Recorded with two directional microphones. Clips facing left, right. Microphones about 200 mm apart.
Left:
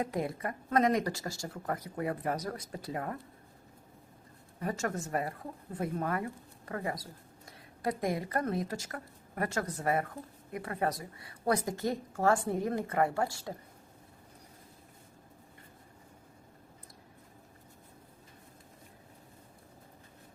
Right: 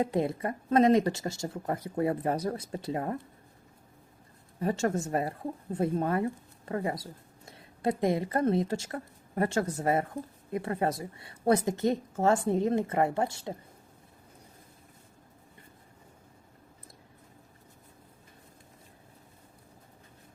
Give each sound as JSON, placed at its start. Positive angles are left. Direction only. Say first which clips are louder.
{"t": 0.0, "sound": "speech", "louder": "right 5 dB", "side_deg": -25}
{"t": 4.6, "sound": "speech", "louder": "right 6 dB", "side_deg": -30}